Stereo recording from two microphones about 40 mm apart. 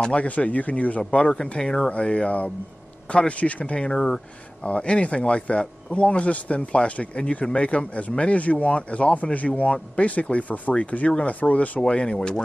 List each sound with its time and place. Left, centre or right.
0.1 s speech: left
1.3 s speech: left
11.9 s speech: left